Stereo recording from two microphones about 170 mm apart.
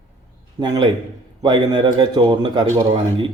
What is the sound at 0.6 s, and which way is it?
A man's voice, 25° right (ahead or behind).